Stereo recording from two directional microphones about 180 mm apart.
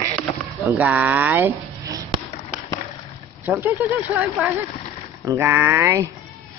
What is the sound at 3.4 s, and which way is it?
Speech, 10° right (ahead or behind).